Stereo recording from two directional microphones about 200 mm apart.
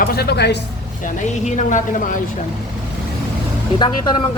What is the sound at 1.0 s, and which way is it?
A woman's voice, 35° left (ahead or behind).